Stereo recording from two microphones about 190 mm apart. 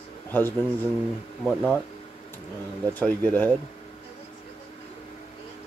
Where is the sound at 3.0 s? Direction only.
10° left (ahead or behind).